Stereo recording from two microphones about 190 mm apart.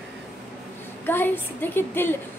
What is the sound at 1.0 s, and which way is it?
A woman's voice, 10° left (ahead or behind).